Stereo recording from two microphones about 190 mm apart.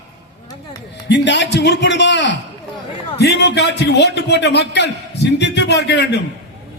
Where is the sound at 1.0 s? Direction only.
65° left (ahead or behind).